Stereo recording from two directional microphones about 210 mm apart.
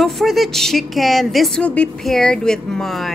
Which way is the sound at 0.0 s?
Centre (ahead or behind).